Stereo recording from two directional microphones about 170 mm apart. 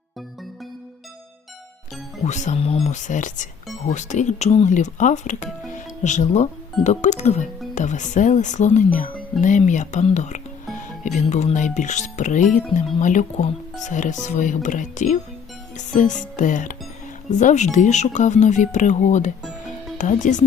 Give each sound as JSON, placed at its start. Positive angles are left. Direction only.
{"t": 2.2, "sound": "speech", "side_deg": 45}
{"t": 15.7, "sound": "music", "side_deg": 45}
{"t": 17.3, "sound": "speech", "side_deg": 45}